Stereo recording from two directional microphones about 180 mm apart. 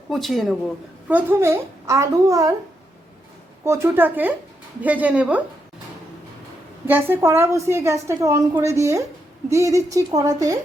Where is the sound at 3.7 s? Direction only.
15° right (ahead or behind).